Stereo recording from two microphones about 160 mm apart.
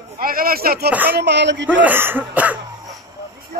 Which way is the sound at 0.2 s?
65° right (ahead or behind).